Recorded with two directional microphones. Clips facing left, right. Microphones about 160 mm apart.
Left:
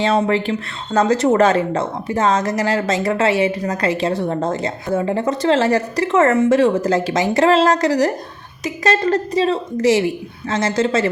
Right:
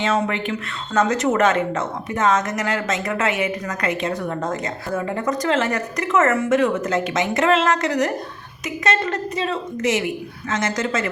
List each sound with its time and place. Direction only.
0.0 s a woman's voice: 35° left (ahead or behind)